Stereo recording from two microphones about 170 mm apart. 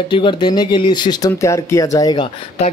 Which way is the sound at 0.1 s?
30° left (ahead or behind).